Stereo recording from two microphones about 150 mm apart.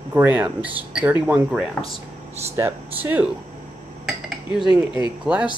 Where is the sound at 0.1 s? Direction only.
10° right (ahead or behind).